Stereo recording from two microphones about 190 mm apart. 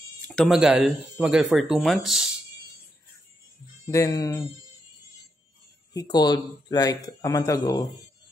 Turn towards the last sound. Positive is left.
turn(degrees=15)  # may be behind; listen again after turning